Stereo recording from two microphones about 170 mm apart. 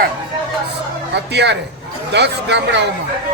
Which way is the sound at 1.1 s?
90° right.